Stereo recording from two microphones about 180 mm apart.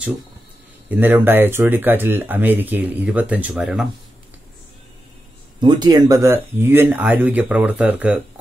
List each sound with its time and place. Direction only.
0.8 s speech: 10° right (ahead or behind)
5.6 s speech: 25° right (ahead or behind); by 8.2 s 10° right (ahead or behind)